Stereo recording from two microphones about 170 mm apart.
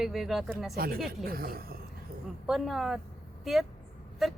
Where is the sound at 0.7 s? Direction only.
60° right (ahead or behind).